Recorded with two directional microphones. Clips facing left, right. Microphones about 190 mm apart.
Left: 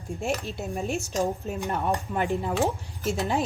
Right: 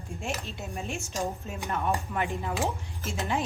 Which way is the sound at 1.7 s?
35° left (ahead or behind).